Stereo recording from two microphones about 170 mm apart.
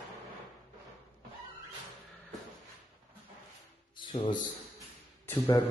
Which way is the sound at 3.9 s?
40° left (ahead or behind).